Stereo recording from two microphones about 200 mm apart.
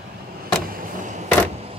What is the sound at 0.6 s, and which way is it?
Vehicle, 40° right (ahead or behind).